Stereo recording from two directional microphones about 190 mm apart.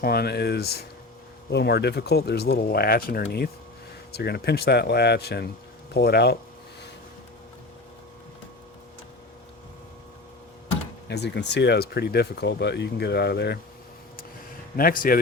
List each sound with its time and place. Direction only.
0.0 s speech: 55° left (ahead or behind)
11.1 s speech: 65° left (ahead or behind)
14.8 s a man's voice: 50° left (ahead or behind)